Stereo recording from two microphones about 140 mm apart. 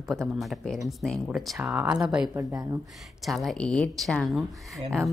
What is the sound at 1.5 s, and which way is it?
Speech, 15° right (ahead or behind).